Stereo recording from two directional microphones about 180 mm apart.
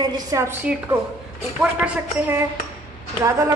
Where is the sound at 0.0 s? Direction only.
20° right (ahead or behind).